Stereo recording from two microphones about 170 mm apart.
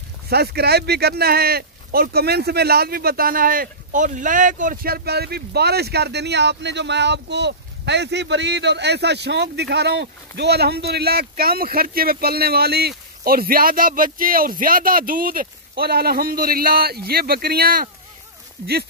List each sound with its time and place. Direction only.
0.3 s speech: 70° right (ahead or behind)